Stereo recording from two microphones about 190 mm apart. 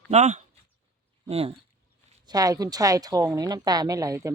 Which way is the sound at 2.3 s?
20° right (ahead or behind).